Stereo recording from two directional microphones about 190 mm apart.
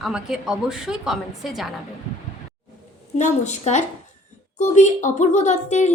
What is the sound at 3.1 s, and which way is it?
A woman's voice, 40° left (ahead or behind).